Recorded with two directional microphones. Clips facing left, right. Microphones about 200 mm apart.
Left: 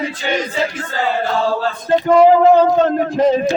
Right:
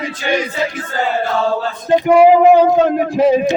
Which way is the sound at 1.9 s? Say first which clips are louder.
Right 1 dB; 10° right (ahead or behind).